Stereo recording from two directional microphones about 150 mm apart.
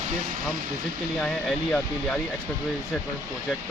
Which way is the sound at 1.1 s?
5° left (ahead or behind).